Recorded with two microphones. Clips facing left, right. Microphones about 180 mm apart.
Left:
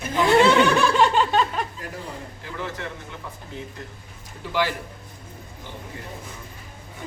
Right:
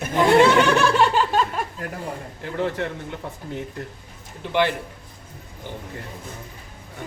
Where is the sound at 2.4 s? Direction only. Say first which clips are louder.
Right 9 dB; 55° right (ahead or behind).